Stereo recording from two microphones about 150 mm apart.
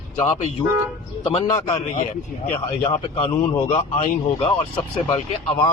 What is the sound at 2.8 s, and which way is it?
Speech, 40° left (ahead or behind).